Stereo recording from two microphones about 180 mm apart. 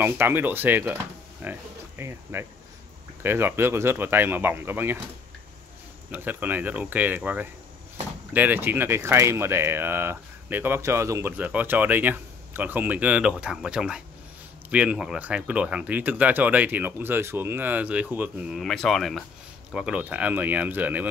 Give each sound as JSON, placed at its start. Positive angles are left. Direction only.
{"t": 0.0, "sound": "speech", "side_deg": -10}
{"t": 6.1, "sound": "speech", "side_deg": -10}